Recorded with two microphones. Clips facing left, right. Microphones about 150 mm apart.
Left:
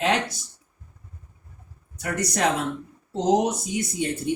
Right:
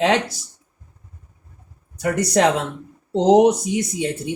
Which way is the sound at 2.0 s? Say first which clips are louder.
Right 7 dB; 90° right.